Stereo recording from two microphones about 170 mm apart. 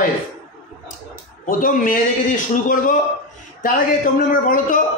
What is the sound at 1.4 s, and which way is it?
A man's voice, 50° left (ahead or behind).